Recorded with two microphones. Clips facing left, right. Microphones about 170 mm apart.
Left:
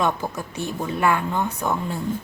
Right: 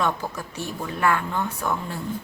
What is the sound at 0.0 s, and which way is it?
A woman's voice, 20° left (ahead or behind).